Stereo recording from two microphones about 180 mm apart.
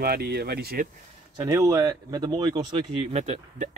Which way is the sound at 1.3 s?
20° right (ahead or behind).